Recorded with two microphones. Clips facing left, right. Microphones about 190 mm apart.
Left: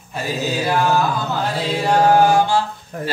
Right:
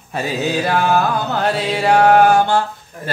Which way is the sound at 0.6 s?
65° right (ahead or behind).